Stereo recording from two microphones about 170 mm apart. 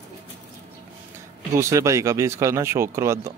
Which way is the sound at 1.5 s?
20° right (ahead or behind).